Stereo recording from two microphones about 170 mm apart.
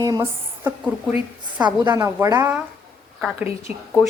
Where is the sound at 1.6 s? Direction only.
25° right (ahead or behind).